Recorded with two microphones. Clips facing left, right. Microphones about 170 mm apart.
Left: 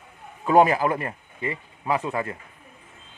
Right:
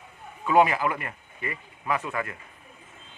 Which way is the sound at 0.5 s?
40° left (ahead or behind).